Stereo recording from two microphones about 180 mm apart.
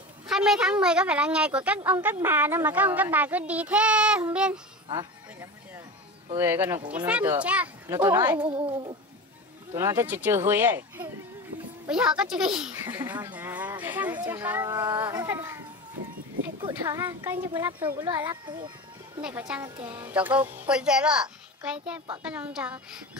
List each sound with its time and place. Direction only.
0.3 s a woman's voice: 5° right (ahead or behind)
6.3 s speech: 10° right (ahead or behind)
8.5 s speech: 30° right (ahead or behind)
9.8 s speech: 15° right (ahead or behind)
16.6 s speech: 15° right (ahead or behind)
18.3 s a child's voice: 25° right (ahead or behind)
19.2 s a woman's voice: 5° right (ahead or behind)